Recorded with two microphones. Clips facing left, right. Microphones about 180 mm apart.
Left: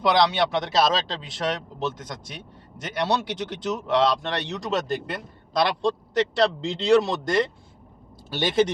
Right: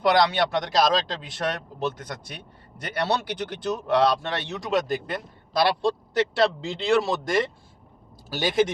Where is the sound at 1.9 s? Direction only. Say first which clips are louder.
Even; 55° right (ahead or behind).